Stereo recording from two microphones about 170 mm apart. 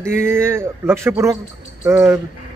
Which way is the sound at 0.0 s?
15° right (ahead or behind).